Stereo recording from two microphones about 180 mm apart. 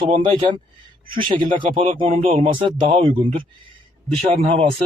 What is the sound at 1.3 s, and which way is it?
Speech, 50° right (ahead or behind).